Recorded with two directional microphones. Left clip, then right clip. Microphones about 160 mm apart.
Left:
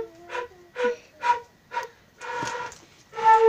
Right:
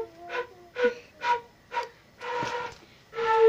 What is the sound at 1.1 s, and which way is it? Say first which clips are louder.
Music: left 3 dB; 5° left (ahead or behind).